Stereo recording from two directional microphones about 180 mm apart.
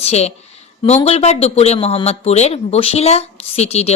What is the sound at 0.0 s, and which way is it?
A woman's voice, 35° left (ahead or behind).